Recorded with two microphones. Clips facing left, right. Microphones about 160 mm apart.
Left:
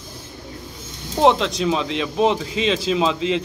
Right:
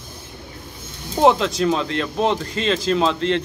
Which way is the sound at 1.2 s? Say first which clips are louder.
Right 1 dB; centre (ahead or behind).